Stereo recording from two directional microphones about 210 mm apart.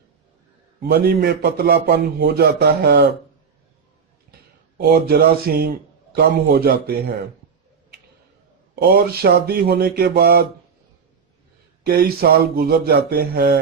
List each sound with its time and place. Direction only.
0.9 s a man's voice: 50° right (ahead or behind)
4.8 s a man's voice: 50° right (ahead or behind)
8.7 s a man's voice: 45° right (ahead or behind)
11.8 s a man's voice: 45° right (ahead or behind)